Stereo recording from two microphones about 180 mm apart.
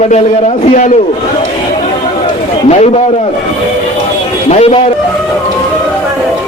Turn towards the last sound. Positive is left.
turn(degrees=35)  # may be behind; listen again after turning